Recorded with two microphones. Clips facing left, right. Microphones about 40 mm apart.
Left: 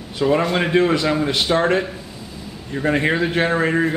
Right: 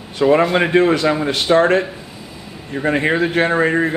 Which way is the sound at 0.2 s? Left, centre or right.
Centre.